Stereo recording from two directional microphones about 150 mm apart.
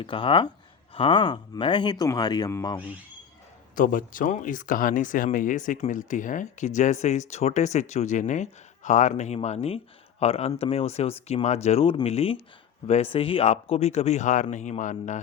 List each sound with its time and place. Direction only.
0.0 s speech: 35° left (ahead or behind)
3.8 s speech: 65° left (ahead or behind)